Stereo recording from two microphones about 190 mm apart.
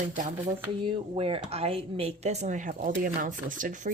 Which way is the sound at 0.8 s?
30° right (ahead or behind).